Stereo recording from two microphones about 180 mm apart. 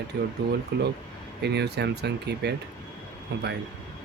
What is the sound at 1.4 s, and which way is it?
Speech, 65° right (ahead or behind).